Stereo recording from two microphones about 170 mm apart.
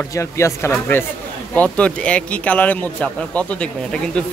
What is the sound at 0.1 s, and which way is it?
A man's voice, 15° left (ahead or behind).